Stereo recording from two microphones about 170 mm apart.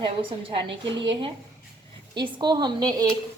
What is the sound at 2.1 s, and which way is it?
Speech, 25° right (ahead or behind).